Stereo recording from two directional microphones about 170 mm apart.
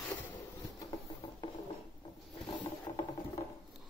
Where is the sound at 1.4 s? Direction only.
25° left (ahead or behind).